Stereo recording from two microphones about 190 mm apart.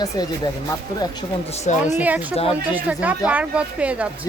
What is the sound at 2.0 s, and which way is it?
Speech, 10° right (ahead or behind).